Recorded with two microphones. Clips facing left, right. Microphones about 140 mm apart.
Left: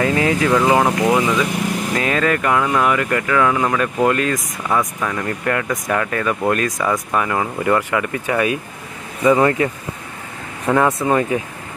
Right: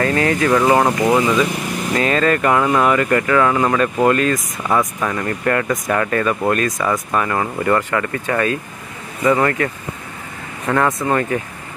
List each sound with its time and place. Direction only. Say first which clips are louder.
0.0 s speech: even; 15° left (ahead or behind)
0.5 s speech: right 2 dB; centre (ahead or behind)
4.6 s speech: right 2 dB; 5° right (ahead or behind); by 9.7 s 15° left (ahead or behind)
10.7 s speech: left 1 dB; 5° left (ahead or behind)